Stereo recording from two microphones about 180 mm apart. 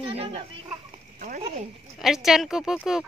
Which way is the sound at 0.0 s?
35° right (ahead or behind).